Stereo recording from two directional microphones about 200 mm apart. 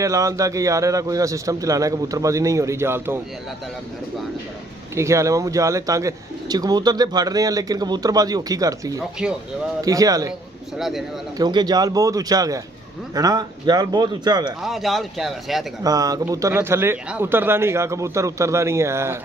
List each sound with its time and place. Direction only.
0.0 s speech: 15° right (ahead or behind)
4.9 s speech: 15° right (ahead or behind)
10.8 s speech: centre (ahead or behind)
11.3 s speech: 20° right (ahead or behind)
14.6 s speech: centre (ahead or behind)
15.8 s speech: 20° right (ahead or behind)